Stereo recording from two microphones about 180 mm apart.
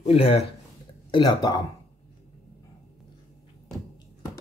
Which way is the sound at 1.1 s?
25° left (ahead or behind).